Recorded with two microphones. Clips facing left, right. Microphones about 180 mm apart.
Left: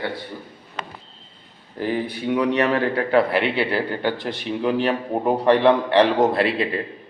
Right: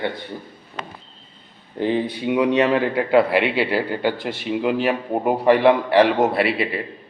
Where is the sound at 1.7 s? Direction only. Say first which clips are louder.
Right 3 dB; 20° right (ahead or behind).